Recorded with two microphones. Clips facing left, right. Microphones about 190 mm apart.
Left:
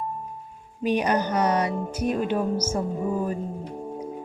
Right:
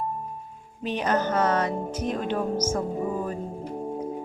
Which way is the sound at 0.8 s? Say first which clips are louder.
Left 3 dB; 10° left (ahead or behind).